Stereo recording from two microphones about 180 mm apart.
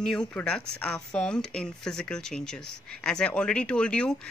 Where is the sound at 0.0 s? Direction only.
5° left (ahead or behind).